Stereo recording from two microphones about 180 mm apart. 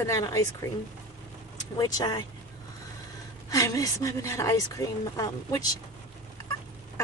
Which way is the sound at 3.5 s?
20° left (ahead or behind).